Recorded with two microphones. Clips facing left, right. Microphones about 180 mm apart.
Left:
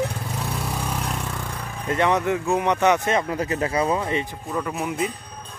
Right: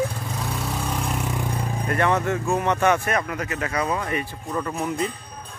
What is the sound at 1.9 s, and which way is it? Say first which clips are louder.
Speech: left 2 dB; 20° left (ahead or behind).